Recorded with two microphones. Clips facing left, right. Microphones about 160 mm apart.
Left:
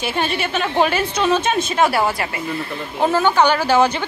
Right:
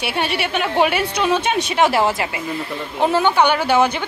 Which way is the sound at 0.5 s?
10° right (ahead or behind).